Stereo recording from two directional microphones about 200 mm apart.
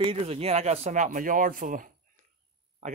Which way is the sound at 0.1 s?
30° right (ahead or behind).